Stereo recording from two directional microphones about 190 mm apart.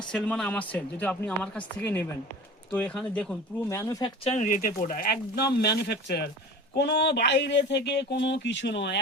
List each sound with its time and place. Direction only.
0.1 s speech: 5° left (ahead or behind)
4.2 s speech: 35° left (ahead or behind)
4.5 s speech: 50° left (ahead or behind); by 9.0 s 65° left (ahead or behind)